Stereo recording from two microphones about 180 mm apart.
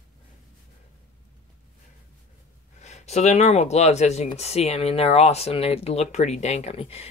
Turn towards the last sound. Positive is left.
turn(degrees=35)  # may be behind; listen again after turning